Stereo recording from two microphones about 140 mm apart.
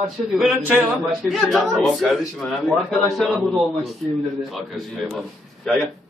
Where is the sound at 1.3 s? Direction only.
Centre (ahead or behind).